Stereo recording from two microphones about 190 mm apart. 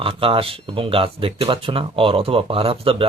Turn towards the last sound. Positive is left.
turn(degrees=-30)  # may be behind; listen again after turning